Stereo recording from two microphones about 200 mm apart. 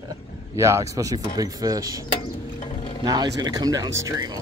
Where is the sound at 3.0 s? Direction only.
20° right (ahead or behind).